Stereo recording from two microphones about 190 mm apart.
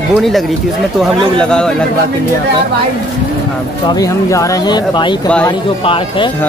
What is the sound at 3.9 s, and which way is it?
Speech, 15° left (ahead or behind).